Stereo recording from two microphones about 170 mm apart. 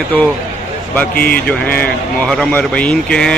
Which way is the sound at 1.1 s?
60° left (ahead or behind).